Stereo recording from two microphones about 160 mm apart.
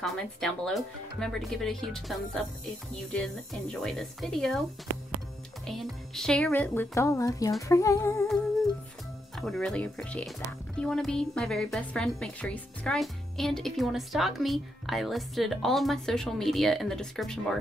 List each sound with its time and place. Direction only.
0.0 s a woman's voice: centre (ahead or behind)
5.7 s speech: centre (ahead or behind); by 7.5 s 20° left (ahead or behind)
7.6 s humming: 20° left (ahead or behind)
9.4 s a woman's voice: centre (ahead or behind)